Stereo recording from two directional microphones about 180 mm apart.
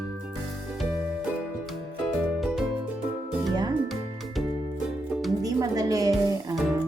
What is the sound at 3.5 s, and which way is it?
Music, 25° right (ahead or behind).